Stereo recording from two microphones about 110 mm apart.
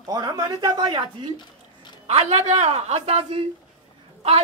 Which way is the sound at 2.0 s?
75° right (ahead or behind).